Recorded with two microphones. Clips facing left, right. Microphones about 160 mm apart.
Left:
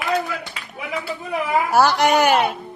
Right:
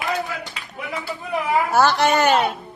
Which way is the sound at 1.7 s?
10° left (ahead or behind).